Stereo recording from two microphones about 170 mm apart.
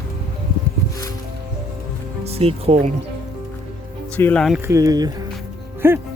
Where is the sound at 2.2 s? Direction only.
35° right (ahead or behind).